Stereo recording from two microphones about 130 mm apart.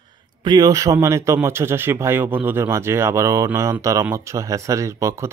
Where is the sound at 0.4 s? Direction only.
35° right (ahead or behind).